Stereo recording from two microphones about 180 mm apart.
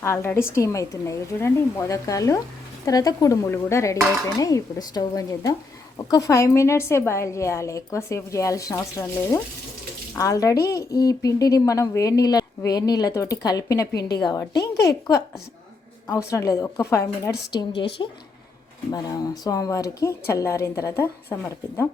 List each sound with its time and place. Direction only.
0.0 s a woman's voice: 15° left (ahead or behind)
14.5 s speech: 65° left (ahead or behind)
16.0 s a woman's voice: 20° left (ahead or behind)
18.9 s a woman's voice: 20° left (ahead or behind)